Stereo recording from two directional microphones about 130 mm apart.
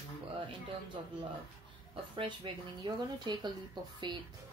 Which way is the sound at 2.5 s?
40° right (ahead or behind).